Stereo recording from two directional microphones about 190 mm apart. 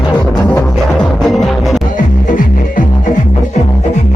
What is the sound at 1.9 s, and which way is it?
Music, 45° left (ahead or behind).